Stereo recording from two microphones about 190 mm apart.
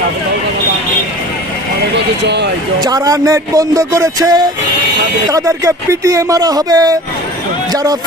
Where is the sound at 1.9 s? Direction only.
65° right (ahead or behind).